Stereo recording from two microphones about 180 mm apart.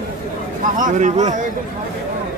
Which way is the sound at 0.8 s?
45° right (ahead or behind).